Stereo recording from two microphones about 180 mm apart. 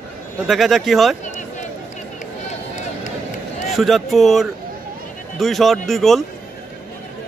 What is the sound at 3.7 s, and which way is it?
A man's voice, centre (ahead or behind).